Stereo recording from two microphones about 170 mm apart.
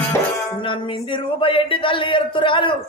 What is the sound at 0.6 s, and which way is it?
A man's voice, 30° left (ahead or behind).